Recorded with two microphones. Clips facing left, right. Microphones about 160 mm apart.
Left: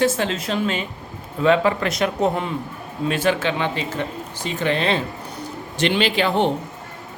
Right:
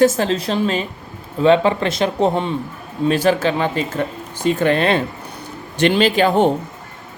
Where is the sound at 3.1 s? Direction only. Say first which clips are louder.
Right 5 dB; 35° right (ahead or behind); by 5.0 s 55° right (ahead or behind).